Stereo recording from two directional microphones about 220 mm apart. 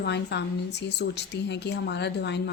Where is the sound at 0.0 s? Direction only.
50° left (ahead or behind).